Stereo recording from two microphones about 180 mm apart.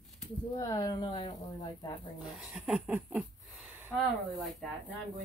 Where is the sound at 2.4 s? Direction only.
5° right (ahead or behind).